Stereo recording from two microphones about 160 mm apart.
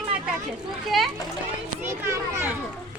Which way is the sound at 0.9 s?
Centre (ahead or behind).